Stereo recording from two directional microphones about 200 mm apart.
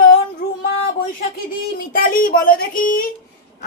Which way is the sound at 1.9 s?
45° left (ahead or behind).